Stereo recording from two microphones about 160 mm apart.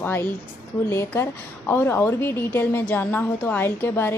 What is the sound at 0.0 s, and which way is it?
A woman's voice, 10° left (ahead or behind).